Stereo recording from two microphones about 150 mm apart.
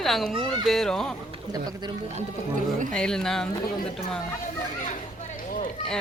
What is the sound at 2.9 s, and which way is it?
Speech, 5° left (ahead or behind).